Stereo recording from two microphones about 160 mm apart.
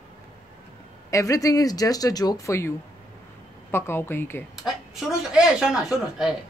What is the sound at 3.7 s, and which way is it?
Speech, 15° left (ahead or behind).